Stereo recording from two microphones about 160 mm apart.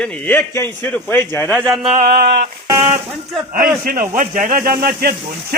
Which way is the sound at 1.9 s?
60° right (ahead or behind).